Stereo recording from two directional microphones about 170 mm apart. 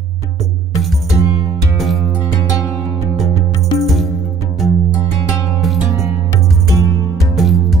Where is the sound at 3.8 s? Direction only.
Centre (ahead or behind).